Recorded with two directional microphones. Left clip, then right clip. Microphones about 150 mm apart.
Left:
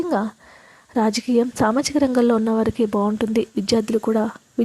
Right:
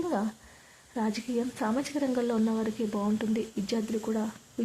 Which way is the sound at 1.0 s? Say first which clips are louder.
Left 13 dB; 55° left (ahead or behind).